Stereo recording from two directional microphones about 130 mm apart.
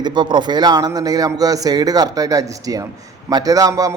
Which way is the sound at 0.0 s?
35° right (ahead or behind).